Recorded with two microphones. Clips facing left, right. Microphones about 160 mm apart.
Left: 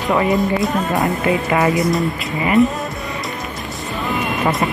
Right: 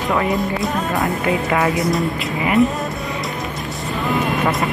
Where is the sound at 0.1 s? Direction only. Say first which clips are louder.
Left 4 dB; centre (ahead or behind).